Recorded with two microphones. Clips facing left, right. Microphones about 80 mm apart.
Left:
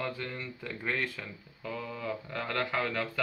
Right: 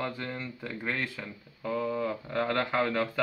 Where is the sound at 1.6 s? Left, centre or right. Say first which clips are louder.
Right 7 dB; centre.